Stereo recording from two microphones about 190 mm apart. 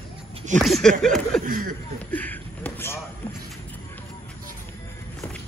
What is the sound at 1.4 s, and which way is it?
Speech, 45° right (ahead or behind).